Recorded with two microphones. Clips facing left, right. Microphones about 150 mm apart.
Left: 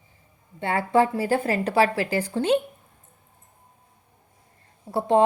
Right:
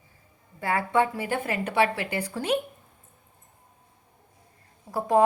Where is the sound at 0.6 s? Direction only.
30° left (ahead or behind).